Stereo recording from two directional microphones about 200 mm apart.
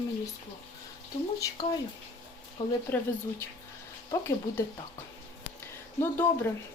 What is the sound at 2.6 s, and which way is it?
Speech, 25° left (ahead or behind).